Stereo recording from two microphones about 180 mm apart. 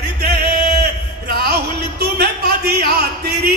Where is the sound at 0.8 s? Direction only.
65° right (ahead or behind).